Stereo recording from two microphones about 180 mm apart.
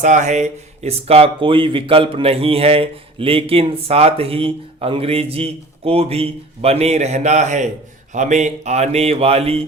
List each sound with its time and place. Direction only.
0.0 s speech: 40° right (ahead or behind)